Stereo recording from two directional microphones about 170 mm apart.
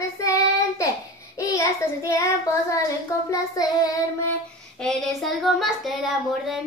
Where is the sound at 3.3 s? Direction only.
20° left (ahead or behind).